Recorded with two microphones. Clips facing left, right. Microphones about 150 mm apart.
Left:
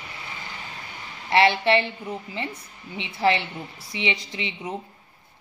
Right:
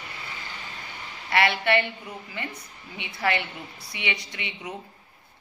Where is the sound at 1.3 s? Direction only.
25° left (ahead or behind).